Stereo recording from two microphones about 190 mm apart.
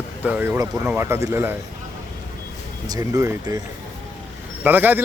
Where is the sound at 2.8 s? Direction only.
20° right (ahead or behind).